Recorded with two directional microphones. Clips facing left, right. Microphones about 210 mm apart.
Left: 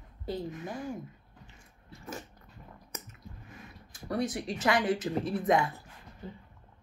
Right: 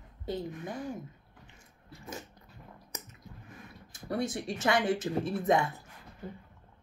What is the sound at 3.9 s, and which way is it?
A woman's voice, 25° right (ahead or behind).